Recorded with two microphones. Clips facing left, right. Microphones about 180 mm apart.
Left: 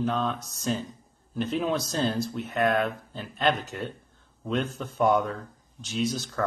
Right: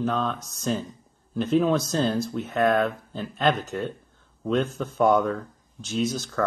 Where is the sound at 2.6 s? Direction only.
40° right (ahead or behind).